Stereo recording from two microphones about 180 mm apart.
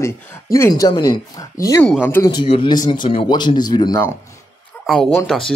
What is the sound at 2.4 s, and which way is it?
Speech, 30° left (ahead or behind).